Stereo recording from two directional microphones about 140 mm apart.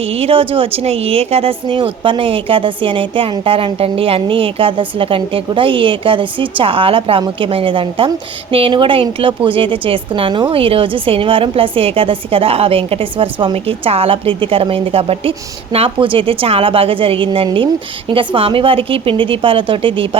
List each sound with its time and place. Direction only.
0.0 s speech: 45° right (ahead or behind)